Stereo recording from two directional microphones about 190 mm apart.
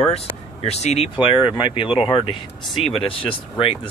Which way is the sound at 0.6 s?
35° left (ahead or behind).